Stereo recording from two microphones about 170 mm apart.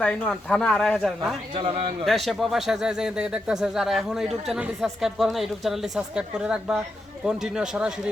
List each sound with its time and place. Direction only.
0.0 s speech: 5° left (ahead or behind)
1.5 s a man's voice: 30° right (ahead or behind)
2.0 s speech: centre (ahead or behind)